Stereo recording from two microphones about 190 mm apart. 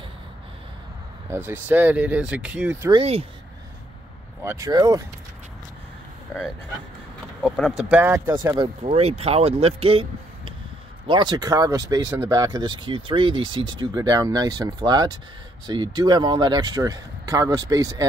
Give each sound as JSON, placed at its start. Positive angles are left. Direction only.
{"t": 1.3, "sound": "speech", "side_deg": -10}
{"t": 2.9, "sound": "speech", "side_deg": -30}
{"t": 4.5, "sound": "speech", "side_deg": -20}
{"t": 7.5, "sound": "speech", "side_deg": 5}
{"t": 7.9, "sound": "speech", "side_deg": -10}